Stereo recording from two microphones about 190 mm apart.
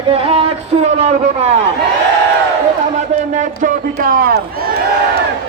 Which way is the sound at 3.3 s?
40° right (ahead or behind).